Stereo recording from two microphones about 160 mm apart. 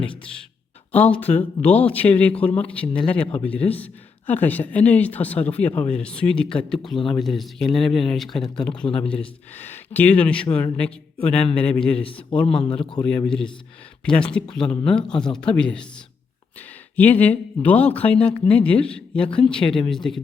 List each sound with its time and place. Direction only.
0.9 s speech: 10° left (ahead or behind)
12.0 s a man's voice: 35° left (ahead or behind)
13.1 s speech: 5° left (ahead or behind)